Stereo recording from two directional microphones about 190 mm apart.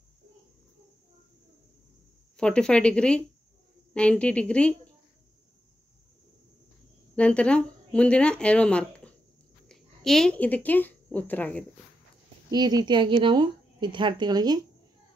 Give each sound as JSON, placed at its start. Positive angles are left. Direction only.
{"t": 2.3, "sound": "speech", "side_deg": 5}
{"t": 7.2, "sound": "speech", "side_deg": 5}
{"t": 12.4, "sound": "a woman's voice", "side_deg": -20}